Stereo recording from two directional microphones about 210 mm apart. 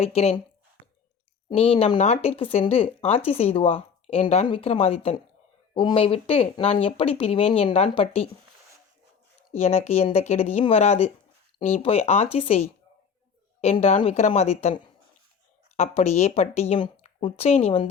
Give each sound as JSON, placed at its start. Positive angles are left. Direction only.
{"t": 0.0, "sound": "speech", "side_deg": 30}
{"t": 1.5, "sound": "speech", "side_deg": 25}
{"t": 9.5, "sound": "speech", "side_deg": 30}